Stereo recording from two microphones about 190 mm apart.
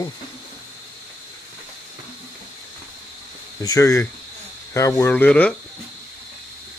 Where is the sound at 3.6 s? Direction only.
15° left (ahead or behind).